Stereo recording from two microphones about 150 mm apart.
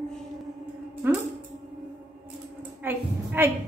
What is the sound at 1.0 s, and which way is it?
Speech, 15° right (ahead or behind).